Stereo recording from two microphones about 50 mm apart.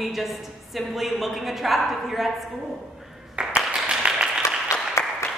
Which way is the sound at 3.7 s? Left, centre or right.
Centre.